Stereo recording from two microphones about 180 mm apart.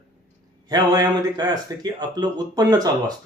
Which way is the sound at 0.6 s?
20° right (ahead or behind).